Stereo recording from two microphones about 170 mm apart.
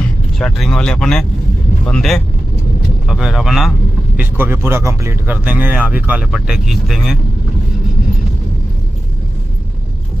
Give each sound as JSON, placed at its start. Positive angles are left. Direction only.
{"t": 0.4, "sound": "speech", "side_deg": 0}
{"t": 4.2, "sound": "speech", "side_deg": -15}